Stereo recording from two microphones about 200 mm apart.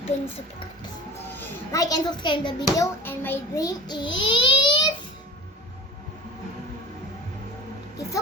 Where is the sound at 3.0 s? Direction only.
10° left (ahead or behind).